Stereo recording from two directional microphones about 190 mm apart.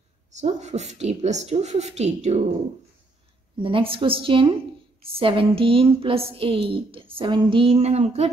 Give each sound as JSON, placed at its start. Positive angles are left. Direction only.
{"t": 0.3, "sound": "a woman's voice", "side_deg": -35}
{"t": 3.5, "sound": "a woman's voice", "side_deg": -30}